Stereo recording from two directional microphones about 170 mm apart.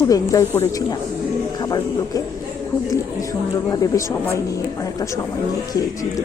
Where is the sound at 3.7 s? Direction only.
20° left (ahead or behind).